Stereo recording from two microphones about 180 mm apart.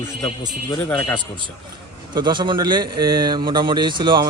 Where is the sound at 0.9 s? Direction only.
5° left (ahead or behind).